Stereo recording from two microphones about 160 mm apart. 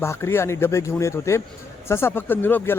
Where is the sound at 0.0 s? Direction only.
15° left (ahead or behind).